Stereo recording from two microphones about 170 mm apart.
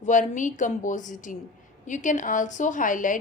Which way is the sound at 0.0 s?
50° left (ahead or behind).